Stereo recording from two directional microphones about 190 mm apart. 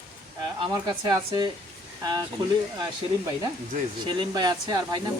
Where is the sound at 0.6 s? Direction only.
20° right (ahead or behind).